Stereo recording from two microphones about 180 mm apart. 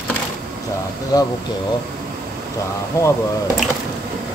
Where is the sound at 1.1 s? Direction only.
20° left (ahead or behind).